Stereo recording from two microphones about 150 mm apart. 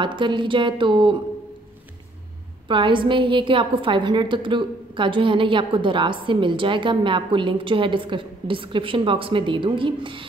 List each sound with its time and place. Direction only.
0.0 s a woman's voice: 30° right (ahead or behind)
2.7 s a woman's voice: 35° right (ahead or behind)